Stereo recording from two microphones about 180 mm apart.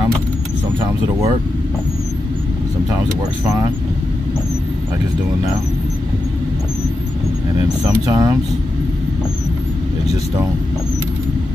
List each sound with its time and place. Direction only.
7.6 s speech: 20° right (ahead or behind)